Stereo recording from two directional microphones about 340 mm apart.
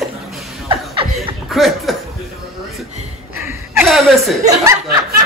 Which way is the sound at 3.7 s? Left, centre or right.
Centre.